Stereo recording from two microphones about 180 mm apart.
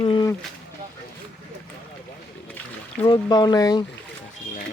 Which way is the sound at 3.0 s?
25° left (ahead or behind).